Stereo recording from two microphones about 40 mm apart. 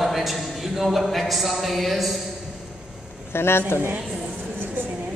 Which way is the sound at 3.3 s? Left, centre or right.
Left.